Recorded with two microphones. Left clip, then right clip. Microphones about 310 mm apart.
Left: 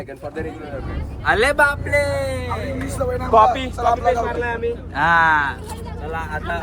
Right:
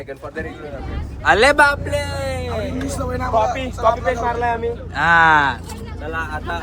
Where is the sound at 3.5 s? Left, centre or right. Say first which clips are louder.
Right 1 dB; centre.